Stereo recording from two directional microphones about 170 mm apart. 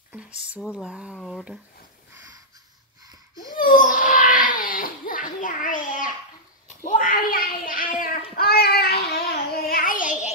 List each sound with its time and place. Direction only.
0.1 s speech: 5° right (ahead or behind)
3.5 s a sound: 50° left (ahead or behind); by 9.2 s 70° left (ahead or behind)
9.7 s child singing: 55° left (ahead or behind)